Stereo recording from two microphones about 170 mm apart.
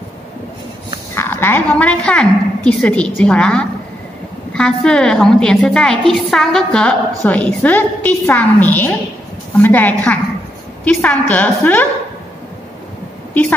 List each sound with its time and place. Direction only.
1.1 s a woman's voice: 15° left (ahead or behind)